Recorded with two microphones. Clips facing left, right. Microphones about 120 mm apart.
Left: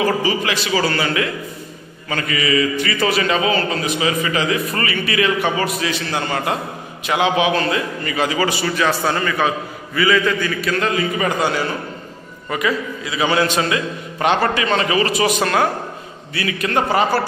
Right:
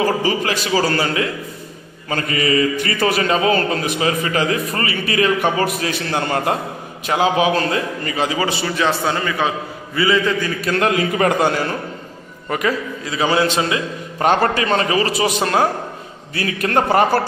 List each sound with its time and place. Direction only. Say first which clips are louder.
0.0 s a man's voice: even; 45° right (ahead or behind)
4.7 s a man's voice: even; 30° right (ahead or behind); by 6.5 s 45° right (ahead or behind)
7.1 s a man's voice: right 1 dB; 35° right (ahead or behind)
10.8 s a man's voice: right 5 dB; 70° right (ahead or behind); by 13.8 s 25° right (ahead or behind)
14.2 s a man's voice: right 1 dB; 40° right (ahead or behind); by 15.6 s 25° right (ahead or behind)
16.3 s a man's voice: right 1 dB; 45° right (ahead or behind)